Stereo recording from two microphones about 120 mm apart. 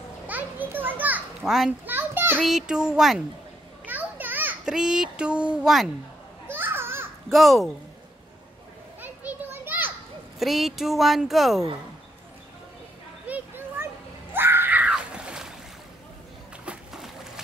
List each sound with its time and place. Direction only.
0.3 s children playing: 15° right (ahead or behind)
2.4 s speech: 5° right (ahead or behind)
3.8 s children playing: 15° right (ahead or behind)
4.6 s speech: 5° right (ahead or behind)
6.4 s children playing: 20° right (ahead or behind)
7.2 s speech: centre (ahead or behind)
9.0 s children playing: 15° right (ahead or behind)
10.4 s speech: centre (ahead or behind)
13.3 s children playing: 20° right (ahead or behind)
14.3 s screaming: 20° right (ahead or behind)
16.6 s a sound: 5° right (ahead or behind)